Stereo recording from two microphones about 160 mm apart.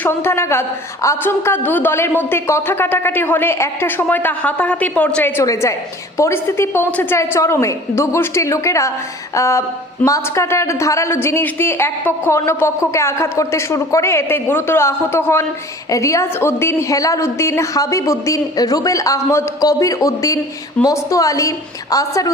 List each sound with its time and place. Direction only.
0.0 s a woman's voice: 15° left (ahead or behind)